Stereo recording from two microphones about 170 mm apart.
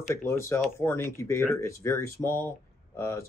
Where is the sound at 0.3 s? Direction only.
15° left (ahead or behind).